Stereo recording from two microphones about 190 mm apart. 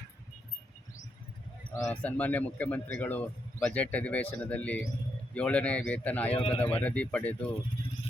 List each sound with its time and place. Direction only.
1.8 s a man's voice: 5° left (ahead or behind)
6.3 s speech: 25° left (ahead or behind)
6.6 s a man's voice: 10° left (ahead or behind)